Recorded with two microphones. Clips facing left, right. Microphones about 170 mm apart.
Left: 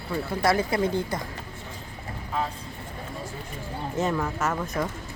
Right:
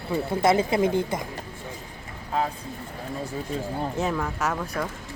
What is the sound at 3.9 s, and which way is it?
Speech, centre (ahead or behind).